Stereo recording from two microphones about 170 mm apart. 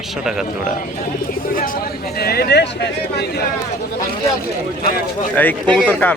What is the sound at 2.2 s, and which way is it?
Speech, 65° left (ahead or behind).